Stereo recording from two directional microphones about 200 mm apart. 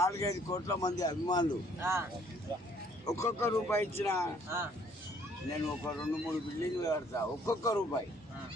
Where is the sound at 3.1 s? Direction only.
15° left (ahead or behind).